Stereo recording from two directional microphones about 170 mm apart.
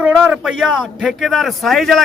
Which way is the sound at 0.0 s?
5° right (ahead or behind).